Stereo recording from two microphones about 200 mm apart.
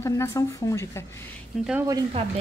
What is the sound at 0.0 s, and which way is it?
A woman's voice, 15° left (ahead or behind).